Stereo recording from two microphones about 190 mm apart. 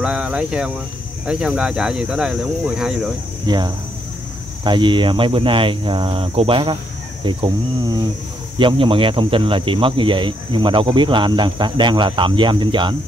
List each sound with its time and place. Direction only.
0.0 s speech: 5° right (ahead or behind)
3.4 s speech: 20° right (ahead or behind)